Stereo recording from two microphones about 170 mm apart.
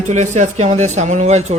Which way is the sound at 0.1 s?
45° right (ahead or behind).